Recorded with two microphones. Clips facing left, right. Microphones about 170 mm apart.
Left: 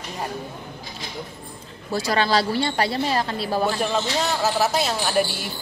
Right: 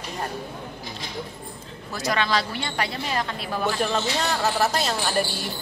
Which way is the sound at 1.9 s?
30° left (ahead or behind).